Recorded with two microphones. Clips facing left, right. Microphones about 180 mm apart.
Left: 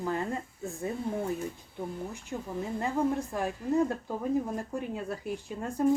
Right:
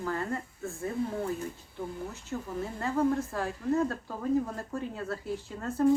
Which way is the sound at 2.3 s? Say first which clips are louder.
Left 1 dB; 10° left (ahead or behind).